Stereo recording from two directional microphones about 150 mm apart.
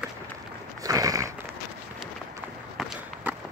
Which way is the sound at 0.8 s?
20° right (ahead or behind).